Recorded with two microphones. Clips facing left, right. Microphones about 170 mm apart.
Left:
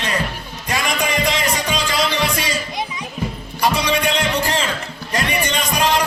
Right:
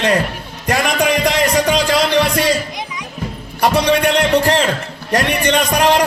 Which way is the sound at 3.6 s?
65° right (ahead or behind).